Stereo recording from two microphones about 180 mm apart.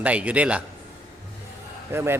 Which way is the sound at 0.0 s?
5° right (ahead or behind).